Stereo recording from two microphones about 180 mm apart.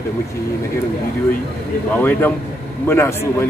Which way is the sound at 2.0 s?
10° left (ahead or behind).